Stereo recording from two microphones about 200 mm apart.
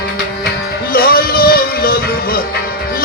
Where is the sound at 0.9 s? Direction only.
50° left (ahead or behind).